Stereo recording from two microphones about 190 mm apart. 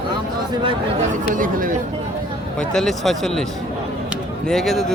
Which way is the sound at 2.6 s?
Centre (ahead or behind).